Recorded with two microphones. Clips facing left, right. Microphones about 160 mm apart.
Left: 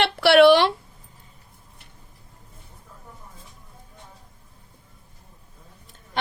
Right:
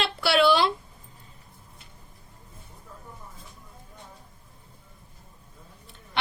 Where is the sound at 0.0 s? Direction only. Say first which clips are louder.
Left 8 dB; 70° left (ahead or behind).